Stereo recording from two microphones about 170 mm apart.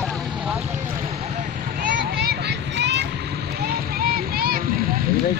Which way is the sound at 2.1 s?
75° right (ahead or behind).